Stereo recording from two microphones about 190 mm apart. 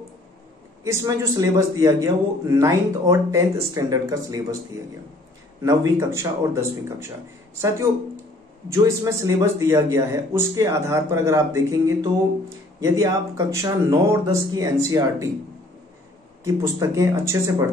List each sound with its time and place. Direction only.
0.8 s speech: 20° right (ahead or behind)
5.6 s speech: 15° right (ahead or behind)
8.7 s speech: 15° right (ahead or behind)
16.4 s speech: 15° right (ahead or behind)